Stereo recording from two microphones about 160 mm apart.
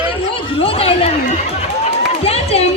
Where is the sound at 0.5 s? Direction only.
35° left (ahead or behind).